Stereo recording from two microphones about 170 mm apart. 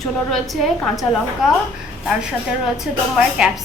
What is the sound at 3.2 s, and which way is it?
Speech, 5° right (ahead or behind).